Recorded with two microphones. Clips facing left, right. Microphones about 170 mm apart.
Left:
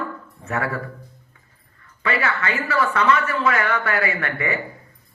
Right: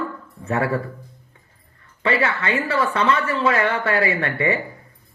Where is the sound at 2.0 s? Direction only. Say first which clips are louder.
Right 2 dB; 30° right (ahead or behind).